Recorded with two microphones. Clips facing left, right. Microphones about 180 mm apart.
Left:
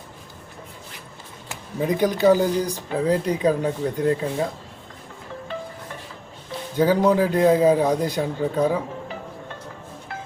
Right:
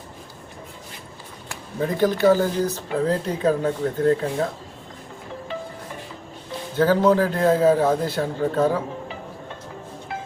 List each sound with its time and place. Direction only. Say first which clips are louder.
1.5 s speech: left 2 dB; 15° left (ahead or behind)
6.7 s speech: even; 15° left (ahead or behind)